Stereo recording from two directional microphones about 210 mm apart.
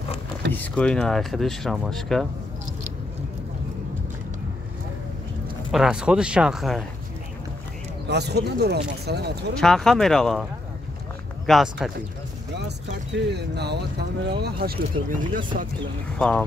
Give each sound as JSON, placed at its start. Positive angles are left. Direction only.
{"t": 0.5, "sound": "speech", "side_deg": 5}
{"t": 5.7, "sound": "speech", "side_deg": -5}
{"t": 8.1, "sound": "speech", "side_deg": -50}
{"t": 9.6, "sound": "speech", "side_deg": 0}
{"t": 11.4, "sound": "speech", "side_deg": 0}
{"t": 12.5, "sound": "speech", "side_deg": -55}
{"t": 16.2, "sound": "speech", "side_deg": 5}